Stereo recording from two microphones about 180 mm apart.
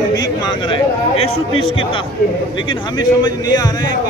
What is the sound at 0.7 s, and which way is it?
A man's voice, 30° left (ahead or behind).